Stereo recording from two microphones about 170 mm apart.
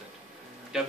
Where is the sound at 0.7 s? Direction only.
Centre (ahead or behind).